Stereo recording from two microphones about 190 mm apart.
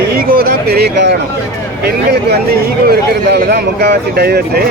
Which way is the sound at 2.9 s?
60° right (ahead or behind).